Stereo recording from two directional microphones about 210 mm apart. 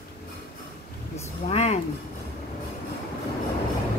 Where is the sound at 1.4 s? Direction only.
30° left (ahead or behind).